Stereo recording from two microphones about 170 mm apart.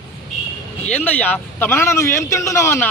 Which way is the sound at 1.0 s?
10° left (ahead or behind).